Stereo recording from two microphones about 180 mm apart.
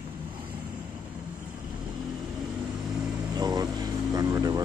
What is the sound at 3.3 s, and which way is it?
Vehicle, 20° right (ahead or behind).